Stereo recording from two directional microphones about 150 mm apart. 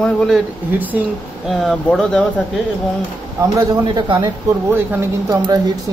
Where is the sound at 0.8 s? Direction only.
10° right (ahead or behind).